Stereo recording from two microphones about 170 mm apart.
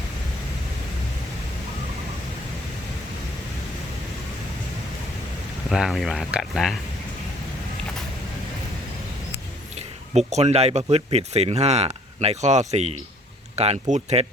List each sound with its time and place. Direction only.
5.6 s speech: centre (ahead or behind)
9.7 s speech: 40° right (ahead or behind)